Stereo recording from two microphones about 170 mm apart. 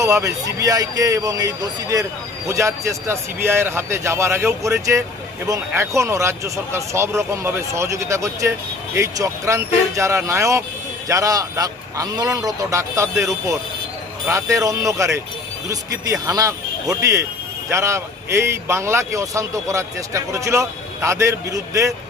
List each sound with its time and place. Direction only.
0.0 s a man's voice: 20° right (ahead or behind)